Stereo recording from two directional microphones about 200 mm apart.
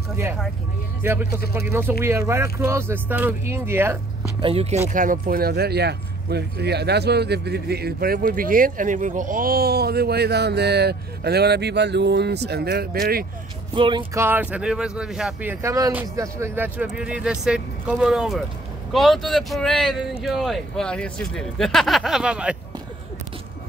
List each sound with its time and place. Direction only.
0.1 s speech: 10° right (ahead or behind)
4.4 s speech: 30° right (ahead or behind); by 13.3 s 50° right (ahead or behind)
13.7 s speech: 25° right (ahead or behind)
14.2 s speech: 10° right (ahead or behind)
15.6 s speech: 15° right (ahead or behind)